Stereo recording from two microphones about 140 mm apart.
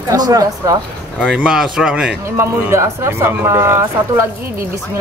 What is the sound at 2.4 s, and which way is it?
Speech, 20° right (ahead or behind).